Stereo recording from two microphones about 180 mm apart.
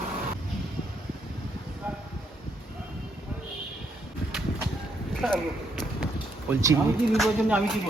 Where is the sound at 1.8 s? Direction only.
10° right (ahead or behind).